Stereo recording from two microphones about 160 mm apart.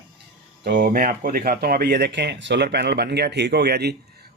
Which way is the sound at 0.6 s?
90° right.